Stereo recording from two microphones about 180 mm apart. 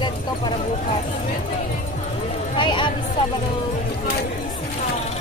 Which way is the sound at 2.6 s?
25° left (ahead or behind).